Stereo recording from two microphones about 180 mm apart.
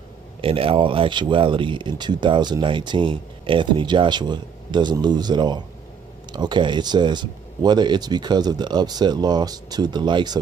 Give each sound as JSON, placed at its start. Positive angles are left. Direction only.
{"t": 0.4, "sound": "speech", "side_deg": -30}